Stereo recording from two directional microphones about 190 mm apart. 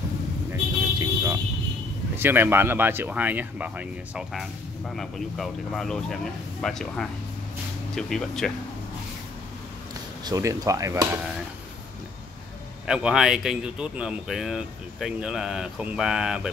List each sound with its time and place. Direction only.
0.9 s vehicle: 15° right (ahead or behind)
2.1 s speech: 10° right (ahead or behind)
10.2 s speech: 15° right (ahead or behind)
12.8 s speech: 5° right (ahead or behind)